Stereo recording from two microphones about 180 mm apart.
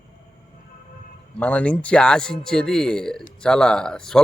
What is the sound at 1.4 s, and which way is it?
A man's voice, 10° left (ahead or behind).